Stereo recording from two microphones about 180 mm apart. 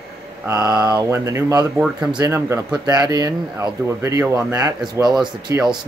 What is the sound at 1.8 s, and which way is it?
Speech, 5° right (ahead or behind).